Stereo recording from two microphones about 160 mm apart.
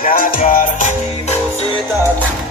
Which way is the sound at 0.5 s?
50° left (ahead or behind).